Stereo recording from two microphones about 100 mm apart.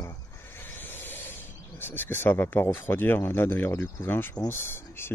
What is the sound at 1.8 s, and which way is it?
Speech, 20° left (ahead or behind).